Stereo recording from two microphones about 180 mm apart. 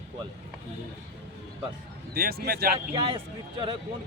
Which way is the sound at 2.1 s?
55° right (ahead or behind).